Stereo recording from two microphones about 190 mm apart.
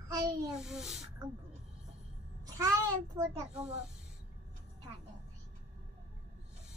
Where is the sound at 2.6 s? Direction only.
15° right (ahead or behind).